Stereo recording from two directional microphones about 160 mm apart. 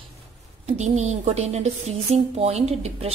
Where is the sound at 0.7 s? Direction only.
45° right (ahead or behind).